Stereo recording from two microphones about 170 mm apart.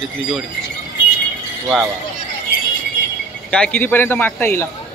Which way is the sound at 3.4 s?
5° left (ahead or behind).